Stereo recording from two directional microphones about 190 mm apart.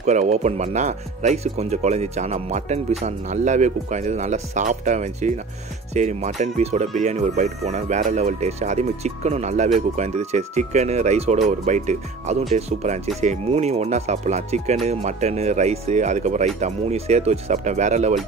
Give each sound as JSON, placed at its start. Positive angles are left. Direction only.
{"t": 0.0, "sound": "speech", "side_deg": -35}